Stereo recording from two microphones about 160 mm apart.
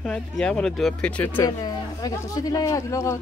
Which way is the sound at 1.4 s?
25° left (ahead or behind).